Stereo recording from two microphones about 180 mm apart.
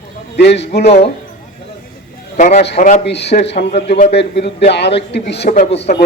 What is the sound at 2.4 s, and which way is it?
Speech, 40° left (ahead or behind).